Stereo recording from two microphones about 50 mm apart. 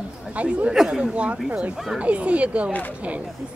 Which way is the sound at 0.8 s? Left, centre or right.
Centre.